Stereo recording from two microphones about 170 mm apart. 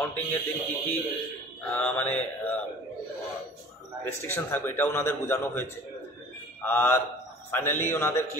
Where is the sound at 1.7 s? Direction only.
10° left (ahead or behind).